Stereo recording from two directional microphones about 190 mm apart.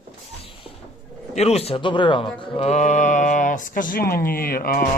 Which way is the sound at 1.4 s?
30° left (ahead or behind).